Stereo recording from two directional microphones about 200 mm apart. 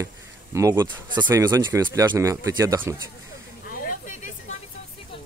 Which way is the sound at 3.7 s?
45° left (ahead or behind).